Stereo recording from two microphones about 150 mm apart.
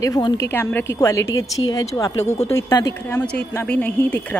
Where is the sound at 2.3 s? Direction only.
45° left (ahead or behind).